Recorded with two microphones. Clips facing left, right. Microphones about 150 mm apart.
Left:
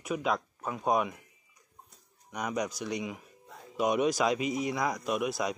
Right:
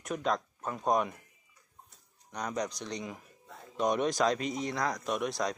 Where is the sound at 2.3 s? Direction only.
10° left (ahead or behind).